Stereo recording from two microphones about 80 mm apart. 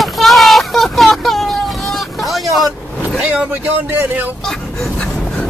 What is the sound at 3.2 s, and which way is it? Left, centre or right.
Speech, centre.